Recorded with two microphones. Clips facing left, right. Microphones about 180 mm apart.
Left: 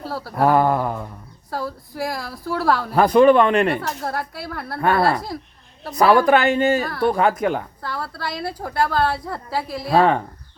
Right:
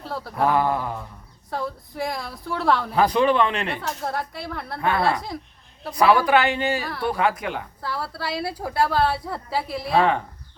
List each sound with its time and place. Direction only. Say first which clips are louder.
0.0 s a sound: left 3 dB; 5° left (ahead or behind)
0.4 s a woman's voice: left 4 dB; 50° left (ahead or behind)
1.5 s a woman's voice: left 1 dB; 5° left (ahead or behind)
2.9 s a woman's voice: left 9 dB; 50° left (ahead or behind)
4.0 s a woman's voice: left 1 dB; 5° left (ahead or behind)
4.8 s a woman's voice: left 4 dB; 50° left (ahead or behind)
7.8 s a woman's voice: left 1 dB; 5° right (ahead or behind)